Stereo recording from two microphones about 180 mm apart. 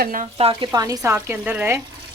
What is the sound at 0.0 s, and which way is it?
Speech, 50° right (ahead or behind).